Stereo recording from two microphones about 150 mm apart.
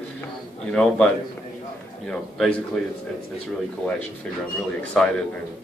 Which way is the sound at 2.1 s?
5° left (ahead or behind).